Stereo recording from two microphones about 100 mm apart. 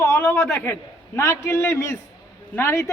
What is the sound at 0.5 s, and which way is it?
A man's voice, 25° left (ahead or behind).